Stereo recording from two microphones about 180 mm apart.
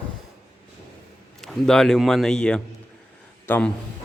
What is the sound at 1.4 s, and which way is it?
A man's voice, centre (ahead or behind).